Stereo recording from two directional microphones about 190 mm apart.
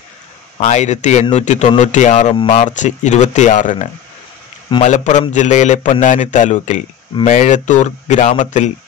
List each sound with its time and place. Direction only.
0.6 s a man's voice: 35° left (ahead or behind)